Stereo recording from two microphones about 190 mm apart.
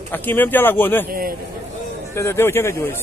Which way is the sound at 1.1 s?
50° right (ahead or behind).